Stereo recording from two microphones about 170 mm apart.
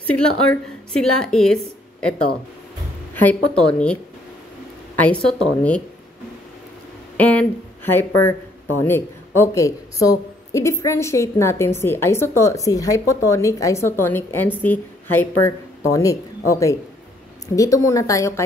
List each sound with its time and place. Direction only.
0.9 s a woman's voice: 5° left (ahead or behind)
3.2 s speech: 10° left (ahead or behind)
7.2 s a woman's voice: 10° left (ahead or behind)